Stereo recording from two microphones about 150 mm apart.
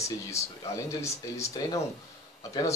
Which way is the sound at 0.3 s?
20° left (ahead or behind).